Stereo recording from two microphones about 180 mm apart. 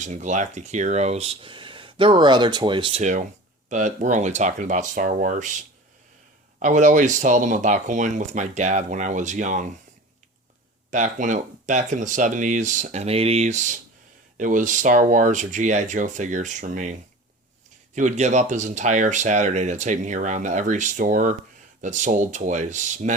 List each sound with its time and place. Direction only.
0.0 s speech: 40° right (ahead or behind)
3.0 s speech: 40° right (ahead or behind)
6.6 s speech: 45° right (ahead or behind)
10.9 s speech: 45° right (ahead or behind)